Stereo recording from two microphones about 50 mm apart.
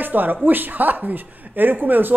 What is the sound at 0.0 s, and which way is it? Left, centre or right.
Speech, right.